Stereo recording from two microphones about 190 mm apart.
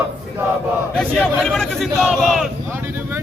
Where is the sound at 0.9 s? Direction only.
Centre (ahead or behind).